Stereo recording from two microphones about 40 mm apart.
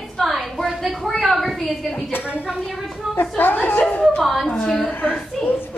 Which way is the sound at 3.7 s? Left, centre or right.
Left.